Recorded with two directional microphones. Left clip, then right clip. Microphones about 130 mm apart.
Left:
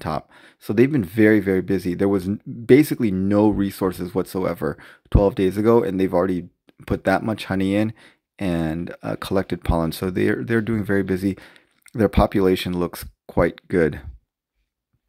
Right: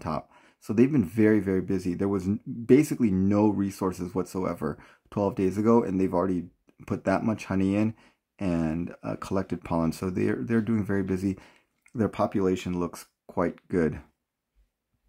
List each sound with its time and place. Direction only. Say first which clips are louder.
0.0 s speech: left 6 dB; 25° left (ahead or behind)
11.9 s speech: left 8 dB; 35° left (ahead or behind)